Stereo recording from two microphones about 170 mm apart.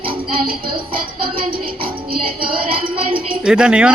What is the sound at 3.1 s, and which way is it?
Music, 5° right (ahead or behind).